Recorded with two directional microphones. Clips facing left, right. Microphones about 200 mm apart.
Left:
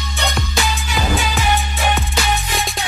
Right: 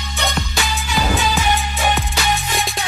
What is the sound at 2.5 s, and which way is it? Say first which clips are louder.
Music: even; centre (ahead or behind).